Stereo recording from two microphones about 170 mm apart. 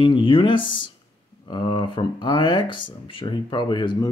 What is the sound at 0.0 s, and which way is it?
Speech, 30° left (ahead or behind).